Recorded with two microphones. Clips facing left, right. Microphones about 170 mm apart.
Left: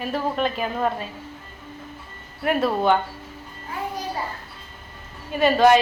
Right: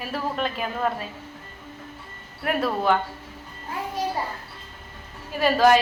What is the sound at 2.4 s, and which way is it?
Speech, centre (ahead or behind).